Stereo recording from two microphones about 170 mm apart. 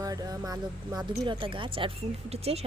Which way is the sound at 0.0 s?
20° right (ahead or behind).